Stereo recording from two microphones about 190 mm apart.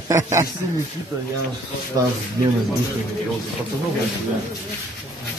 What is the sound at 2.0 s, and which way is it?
Speech, 20° right (ahead or behind).